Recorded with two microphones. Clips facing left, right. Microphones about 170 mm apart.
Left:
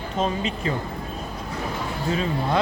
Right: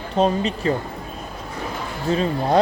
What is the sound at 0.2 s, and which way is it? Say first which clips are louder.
Speech: right 6 dB; 35° right (ahead or behind).